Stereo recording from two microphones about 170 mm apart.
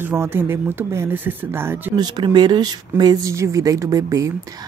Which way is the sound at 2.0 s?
25° right (ahead or behind).